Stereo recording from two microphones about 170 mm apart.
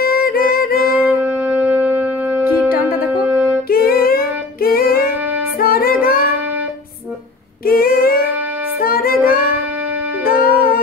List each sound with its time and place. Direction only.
0.0 s music: 60° left (ahead or behind)
0.9 s music: 10° right (ahead or behind)
3.6 s music: 60° left (ahead or behind)
7.6 s female singing: 60° left (ahead or behind)
8.8 s music: 60° left (ahead or behind)
10.2 s music: 60° left (ahead or behind)